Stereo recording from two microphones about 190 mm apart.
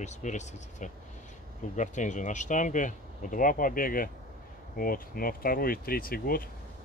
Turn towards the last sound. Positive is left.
turn(degrees=50)  # may be behind; listen again after turning